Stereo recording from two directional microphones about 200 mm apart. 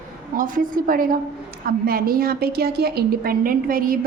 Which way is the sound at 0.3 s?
45° right (ahead or behind).